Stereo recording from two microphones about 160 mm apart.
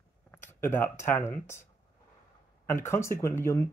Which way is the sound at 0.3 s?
15° left (ahead or behind).